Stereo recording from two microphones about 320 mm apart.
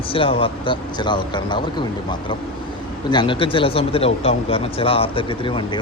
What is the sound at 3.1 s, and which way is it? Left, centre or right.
Speech, centre.